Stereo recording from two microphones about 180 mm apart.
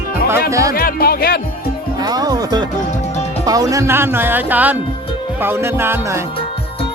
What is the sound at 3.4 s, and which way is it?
Speech, 20° right (ahead or behind).